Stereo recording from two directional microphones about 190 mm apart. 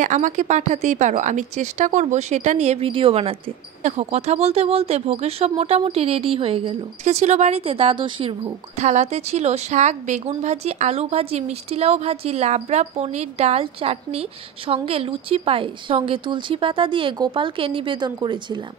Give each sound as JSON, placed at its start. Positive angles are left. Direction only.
{"t": 0.0, "sound": "speech", "side_deg": -40}